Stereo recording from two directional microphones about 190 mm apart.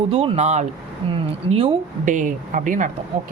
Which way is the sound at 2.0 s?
40° right (ahead or behind).